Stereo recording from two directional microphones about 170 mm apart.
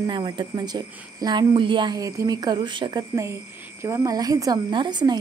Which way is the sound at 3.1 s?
15° right (ahead or behind).